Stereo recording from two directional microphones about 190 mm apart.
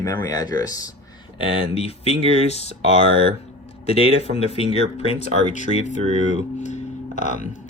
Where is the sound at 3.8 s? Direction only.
35° left (ahead or behind).